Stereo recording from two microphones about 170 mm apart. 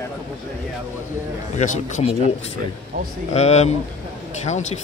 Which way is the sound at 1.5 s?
45° left (ahead or behind).